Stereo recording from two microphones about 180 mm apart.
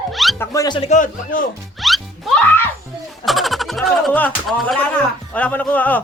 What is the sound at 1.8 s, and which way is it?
Music, centre (ahead or behind).